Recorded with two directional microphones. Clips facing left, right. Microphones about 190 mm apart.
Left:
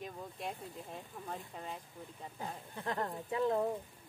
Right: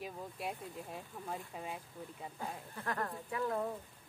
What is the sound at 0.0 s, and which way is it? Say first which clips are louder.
Speech: right 1 dB; 5° right (ahead or behind).